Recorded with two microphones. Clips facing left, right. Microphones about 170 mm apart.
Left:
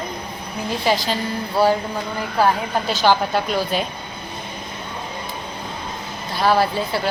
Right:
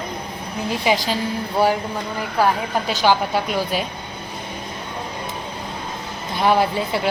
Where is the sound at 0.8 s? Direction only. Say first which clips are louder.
Even; 15° right (ahead or behind).